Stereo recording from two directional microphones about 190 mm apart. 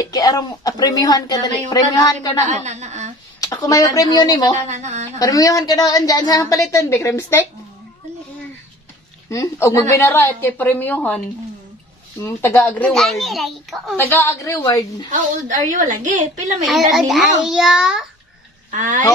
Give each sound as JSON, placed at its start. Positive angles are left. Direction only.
{"t": 0.0, "sound": "speech", "side_deg": 20}
{"t": 2.5, "sound": "a woman's voice", "side_deg": -35}
{"t": 3.3, "sound": "speech", "side_deg": 20}
{"t": 4.6, "sound": "a woman's voice", "side_deg": -35}
{"t": 5.2, "sound": "a woman's voice", "side_deg": 20}
{"t": 9.3, "sound": "a woman's voice", "side_deg": 15}
{"t": 13.9, "sound": "a woman's voice", "side_deg": 10}
{"t": 15.7, "sound": "a woman's voice", "side_deg": -45}
{"t": 16.6, "sound": "a child's voice", "side_deg": 0}
{"t": 18.7, "sound": "a woman's voice", "side_deg": -40}